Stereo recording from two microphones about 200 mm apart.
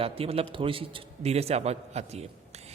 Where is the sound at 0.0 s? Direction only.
30° right (ahead or behind).